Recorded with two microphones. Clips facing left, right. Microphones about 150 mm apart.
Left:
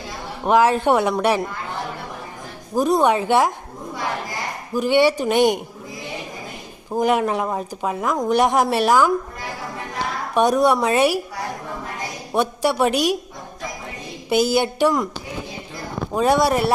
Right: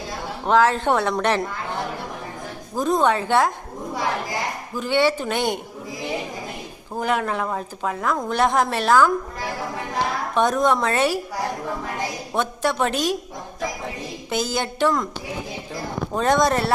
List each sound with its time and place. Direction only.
0.4 s a woman's voice: 15° left (ahead or behind)
2.7 s a woman's voice: 10° left (ahead or behind)
4.7 s a woman's voice: 15° left (ahead or behind)
6.9 s a woman's voice: 15° left (ahead or behind)
10.3 s a woman's voice: 15° left (ahead or behind)
12.3 s a woman's voice: 10° left (ahead or behind)
14.3 s a woman's voice: 15° left (ahead or behind)
16.1 s a woman's voice: 10° left (ahead or behind)